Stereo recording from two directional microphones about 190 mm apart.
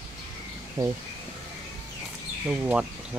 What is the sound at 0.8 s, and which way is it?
Speech, 15° right (ahead or behind).